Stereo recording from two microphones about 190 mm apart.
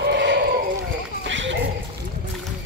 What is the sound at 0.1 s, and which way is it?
Sheep, 65° right (ahead or behind).